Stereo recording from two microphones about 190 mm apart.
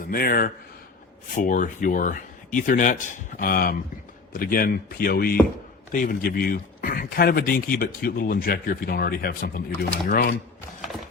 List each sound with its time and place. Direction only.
0.0 s speech: 50° left (ahead or behind)